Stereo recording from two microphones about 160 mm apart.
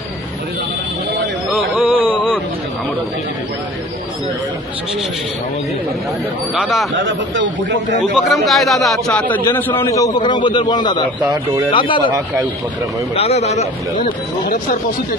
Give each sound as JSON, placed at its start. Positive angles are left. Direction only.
{"t": 1.5, "sound": "a sound", "side_deg": -10}
{"t": 6.5, "sound": "a man's voice", "side_deg": -5}
{"t": 8.0, "sound": "a man's voice", "side_deg": 0}
{"t": 13.1, "sound": "speech", "side_deg": 40}
{"t": 14.4, "sound": "speech", "side_deg": 60}